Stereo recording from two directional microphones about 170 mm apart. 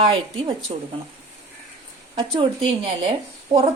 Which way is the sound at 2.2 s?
30° right (ahead or behind).